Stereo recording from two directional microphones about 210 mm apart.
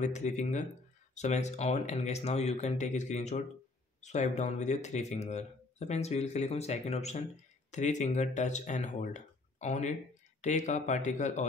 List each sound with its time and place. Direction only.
0.0 s speech: 35° left (ahead or behind)